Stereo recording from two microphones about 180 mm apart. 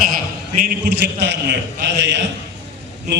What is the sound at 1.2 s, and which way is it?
A man's voice, 70° right (ahead or behind).